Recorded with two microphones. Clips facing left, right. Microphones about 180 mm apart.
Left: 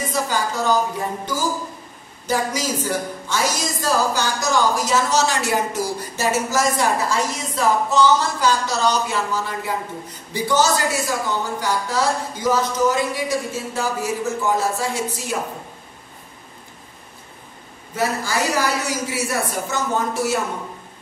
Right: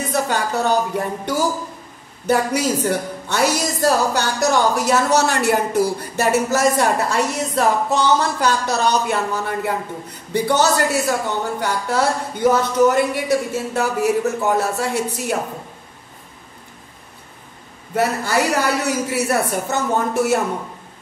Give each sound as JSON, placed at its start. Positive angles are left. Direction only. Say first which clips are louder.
{"t": 0.1, "sound": "a woman's voice", "louder": "right 4 dB", "side_deg": -65}
{"t": 17.9, "sound": "a woman's voice", "louder": "right 4 dB", "side_deg": -65}